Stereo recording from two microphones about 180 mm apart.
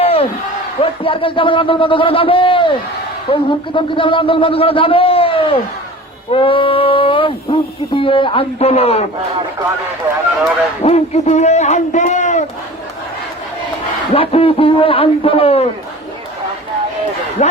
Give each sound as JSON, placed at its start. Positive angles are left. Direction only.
{"t": 0.0, "sound": "a sound", "side_deg": 35}
{"t": 0.8, "sound": "speech", "side_deg": 30}
{"t": 6.3, "sound": "a sound", "side_deg": 30}
{"t": 10.8, "sound": "a man's voice", "side_deg": 35}
{"t": 14.1, "sound": "speech", "side_deg": 30}
{"t": 17.4, "sound": "speech", "side_deg": 40}